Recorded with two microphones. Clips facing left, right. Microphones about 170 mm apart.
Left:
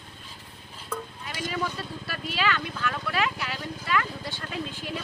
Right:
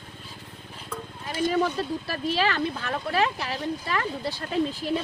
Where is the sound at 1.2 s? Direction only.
40° right (ahead or behind).